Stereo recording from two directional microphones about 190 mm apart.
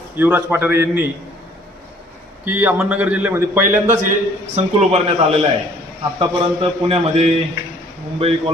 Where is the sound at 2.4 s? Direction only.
10° right (ahead or behind).